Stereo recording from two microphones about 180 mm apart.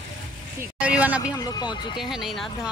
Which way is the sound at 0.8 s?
5° right (ahead or behind).